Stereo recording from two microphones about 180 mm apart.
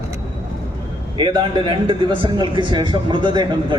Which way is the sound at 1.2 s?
25° right (ahead or behind).